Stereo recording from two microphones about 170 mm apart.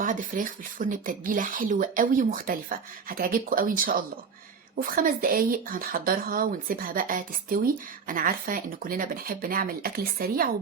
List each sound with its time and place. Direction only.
0.0 s speech: 50° right (ahead or behind)